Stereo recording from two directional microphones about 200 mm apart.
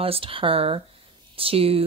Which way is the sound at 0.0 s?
25° right (ahead or behind).